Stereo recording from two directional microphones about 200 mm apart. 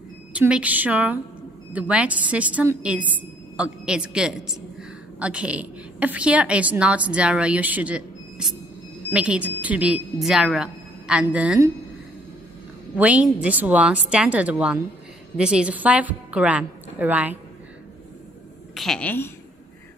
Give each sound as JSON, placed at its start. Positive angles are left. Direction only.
{"t": 0.3, "sound": "a woman's voice", "side_deg": -5}
{"t": 12.9, "sound": "a woman's voice", "side_deg": -5}
{"t": 18.8, "sound": "a woman's voice", "side_deg": 5}